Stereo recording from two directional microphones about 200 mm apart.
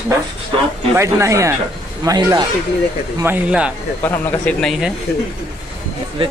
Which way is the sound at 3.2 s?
5° right (ahead or behind).